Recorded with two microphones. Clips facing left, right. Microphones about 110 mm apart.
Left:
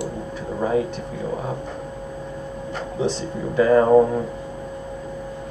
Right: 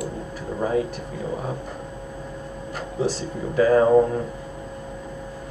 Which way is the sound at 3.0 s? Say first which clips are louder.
Left 1 dB; centre (ahead or behind).